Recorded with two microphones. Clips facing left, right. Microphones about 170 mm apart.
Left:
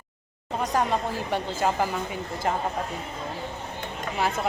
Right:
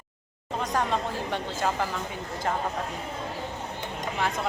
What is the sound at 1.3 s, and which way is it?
Speech, 10° left (ahead or behind).